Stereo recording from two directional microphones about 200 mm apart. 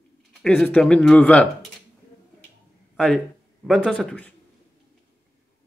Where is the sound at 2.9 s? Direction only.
Centre (ahead or behind).